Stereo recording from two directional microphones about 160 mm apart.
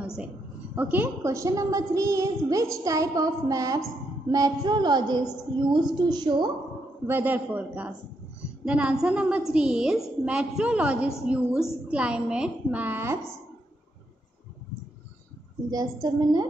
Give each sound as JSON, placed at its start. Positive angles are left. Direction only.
{"t": 0.0, "sound": "a sound", "side_deg": -5}
{"t": 0.7, "sound": "a woman's voice", "side_deg": -10}
{"t": 7.1, "sound": "a woman's voice", "side_deg": -10}
{"t": 15.7, "sound": "a woman's voice", "side_deg": -25}